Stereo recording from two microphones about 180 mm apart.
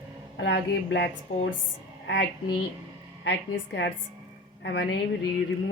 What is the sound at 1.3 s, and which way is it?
Speech, 45° left (ahead or behind).